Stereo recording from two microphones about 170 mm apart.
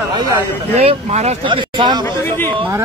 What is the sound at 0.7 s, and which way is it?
Speech, 40° right (ahead or behind).